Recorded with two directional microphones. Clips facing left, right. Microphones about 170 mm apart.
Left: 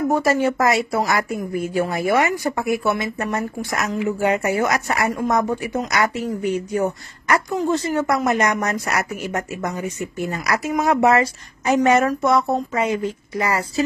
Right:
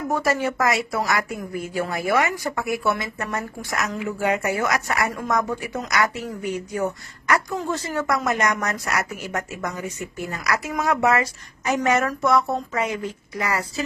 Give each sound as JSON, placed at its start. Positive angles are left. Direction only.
{"t": 0.1, "sound": "speech", "side_deg": 30}